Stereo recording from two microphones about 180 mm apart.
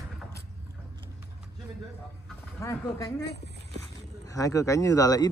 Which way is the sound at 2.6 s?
15° left (ahead or behind).